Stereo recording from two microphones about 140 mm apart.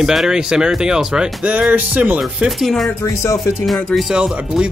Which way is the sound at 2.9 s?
20° left (ahead or behind).